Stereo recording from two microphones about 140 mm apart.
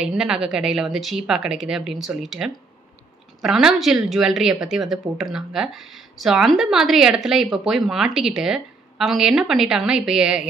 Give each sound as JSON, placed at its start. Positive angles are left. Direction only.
{"t": 0.0, "sound": "a woman's voice", "side_deg": -5}